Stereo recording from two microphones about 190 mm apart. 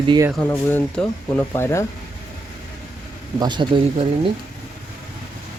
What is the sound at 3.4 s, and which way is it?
Speech, 25° right (ahead or behind).